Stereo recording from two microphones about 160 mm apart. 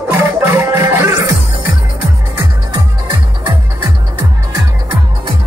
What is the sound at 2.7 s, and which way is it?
Music, 25° right (ahead or behind).